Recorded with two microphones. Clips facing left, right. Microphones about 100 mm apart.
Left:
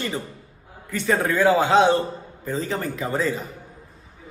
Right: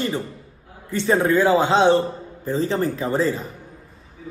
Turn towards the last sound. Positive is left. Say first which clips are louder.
# right 3 dB
turn(degrees=-35)  # may be behind; listen again after turning